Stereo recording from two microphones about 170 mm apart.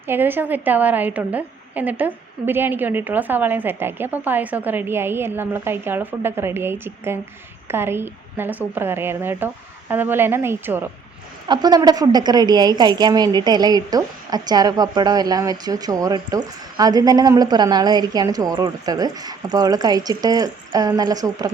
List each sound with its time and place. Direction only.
0.1 s a woman's voice: 10° right (ahead or behind)
11.4 s a woman's voice: 25° right (ahead or behind)